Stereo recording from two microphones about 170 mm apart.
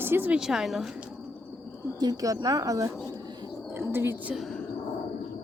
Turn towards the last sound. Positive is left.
turn(degrees=0)  # may be behind; listen again after turning